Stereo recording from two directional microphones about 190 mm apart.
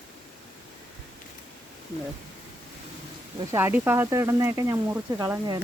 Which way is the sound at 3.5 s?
10° right (ahead or behind).